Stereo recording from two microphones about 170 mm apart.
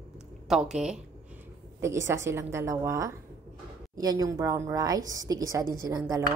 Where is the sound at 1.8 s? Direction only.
15° right (ahead or behind).